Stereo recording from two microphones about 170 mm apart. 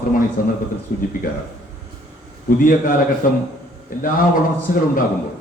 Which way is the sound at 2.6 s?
55° left (ahead or behind).